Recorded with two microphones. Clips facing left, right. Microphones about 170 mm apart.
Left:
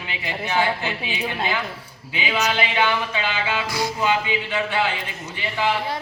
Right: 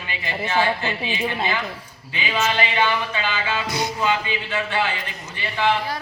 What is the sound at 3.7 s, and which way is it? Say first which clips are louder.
Speech: even; 20° right (ahead or behind).